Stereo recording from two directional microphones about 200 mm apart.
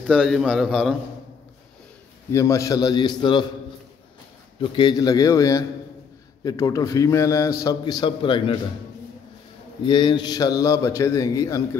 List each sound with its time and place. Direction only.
0.0 s a man's voice: 5° left (ahead or behind)
2.3 s a man's voice: 15° left (ahead or behind)
4.6 s a man's voice: 20° left (ahead or behind)
9.8 s a man's voice: 20° left (ahead or behind)